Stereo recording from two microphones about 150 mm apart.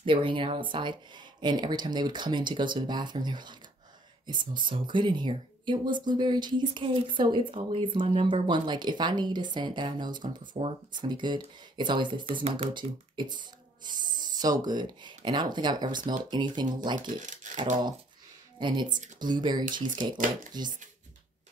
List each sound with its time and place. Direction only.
0.0 s speech: 35° right (ahead or behind)
17.0 s speech: 55° right (ahead or behind)
18.6 s speech: 30° right (ahead or behind)